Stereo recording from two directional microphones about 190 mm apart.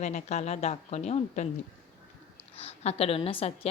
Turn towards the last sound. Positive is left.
turn(degrees=30)  # may be behind; listen again after turning